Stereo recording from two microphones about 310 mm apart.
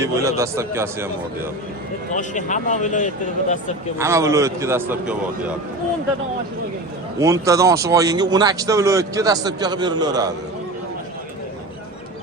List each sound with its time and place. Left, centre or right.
0.0 s speech: centre
2.1 s speech: left
3.9 s speech: centre
7.2 s speech: centre